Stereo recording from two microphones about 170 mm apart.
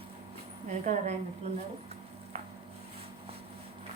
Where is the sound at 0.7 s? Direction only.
45° right (ahead or behind).